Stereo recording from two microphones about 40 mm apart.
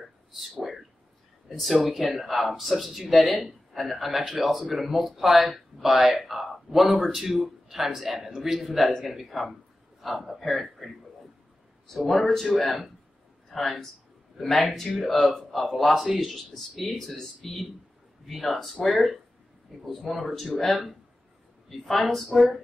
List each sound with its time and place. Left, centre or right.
0.4 s speech: centre
12.0 s speech: centre
14.7 s speech: centre
15.0 s speech: centre